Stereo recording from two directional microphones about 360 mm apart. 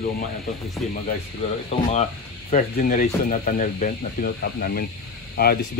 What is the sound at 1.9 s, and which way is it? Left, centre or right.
Speech, centre.